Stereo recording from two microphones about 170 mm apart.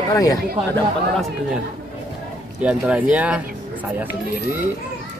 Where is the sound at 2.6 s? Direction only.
5° right (ahead or behind).